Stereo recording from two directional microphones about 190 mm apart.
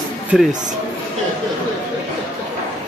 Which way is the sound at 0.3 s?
5° right (ahead or behind).